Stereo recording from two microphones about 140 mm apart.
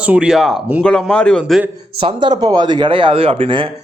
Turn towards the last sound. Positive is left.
turn(degrees=-40)  # may be behind; listen again after turning